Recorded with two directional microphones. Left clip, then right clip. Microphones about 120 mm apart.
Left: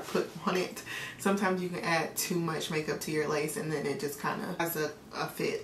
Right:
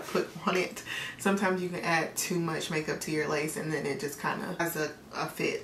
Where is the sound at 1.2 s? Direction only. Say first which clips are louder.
Right 1 dB; 5° right (ahead or behind).